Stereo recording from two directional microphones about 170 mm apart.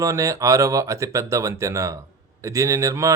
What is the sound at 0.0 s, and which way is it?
A man's voice, 20° right (ahead or behind).